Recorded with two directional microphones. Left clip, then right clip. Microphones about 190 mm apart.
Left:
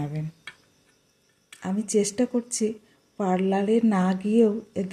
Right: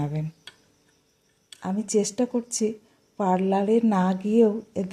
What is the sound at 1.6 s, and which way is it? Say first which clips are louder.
Speech: even; 5° left (ahead or behind).